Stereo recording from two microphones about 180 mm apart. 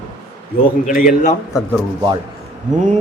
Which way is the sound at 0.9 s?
45° left (ahead or behind).